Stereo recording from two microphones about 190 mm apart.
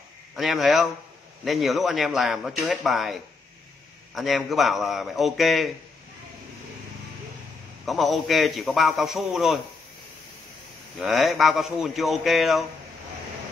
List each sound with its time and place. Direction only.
0.4 s a man's voice: centre (ahead or behind)
7.8 s a man's voice: centre (ahead or behind)
11.0 s a man's voice: centre (ahead or behind)